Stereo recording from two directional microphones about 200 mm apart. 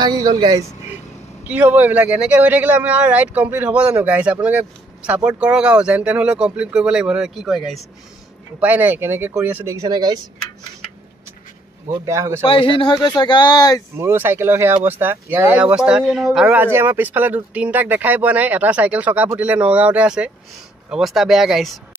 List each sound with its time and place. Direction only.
0.0 s speech: 20° right (ahead or behind)
1.4 s speech: 5° right (ahead or behind)
12.1 s speech: 15° right (ahead or behind)
12.4 s speech: 25° left (ahead or behind)
13.9 s speech: 10° right (ahead or behind)